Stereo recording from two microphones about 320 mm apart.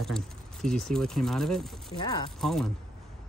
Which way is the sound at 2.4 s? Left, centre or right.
Centre.